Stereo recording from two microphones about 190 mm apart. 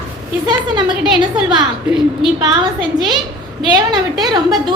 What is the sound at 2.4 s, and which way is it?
A woman's voice, 20° right (ahead or behind).